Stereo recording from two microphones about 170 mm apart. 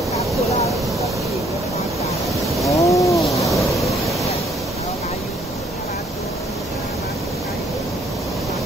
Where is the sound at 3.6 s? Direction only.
Centre (ahead or behind).